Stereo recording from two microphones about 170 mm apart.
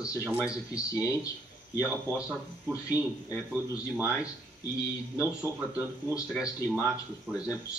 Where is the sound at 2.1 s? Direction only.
10° right (ahead or behind).